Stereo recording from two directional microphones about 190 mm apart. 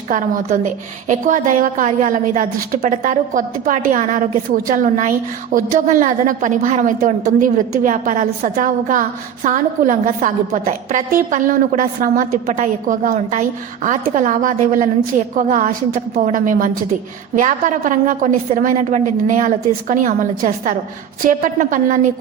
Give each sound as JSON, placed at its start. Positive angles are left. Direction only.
{"t": 0.1, "sound": "a woman's voice", "side_deg": -40}